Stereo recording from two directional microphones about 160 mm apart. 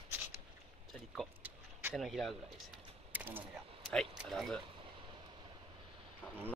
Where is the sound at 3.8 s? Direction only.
Centre (ahead or behind).